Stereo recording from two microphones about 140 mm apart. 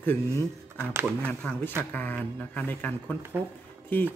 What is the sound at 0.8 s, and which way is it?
Speech, 15° right (ahead or behind).